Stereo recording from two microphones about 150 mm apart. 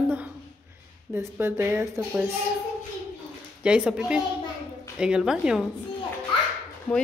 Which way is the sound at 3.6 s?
5° right (ahead or behind).